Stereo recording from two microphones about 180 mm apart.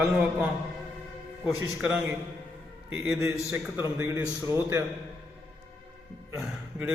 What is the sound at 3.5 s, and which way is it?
A man's voice, 15° right (ahead or behind).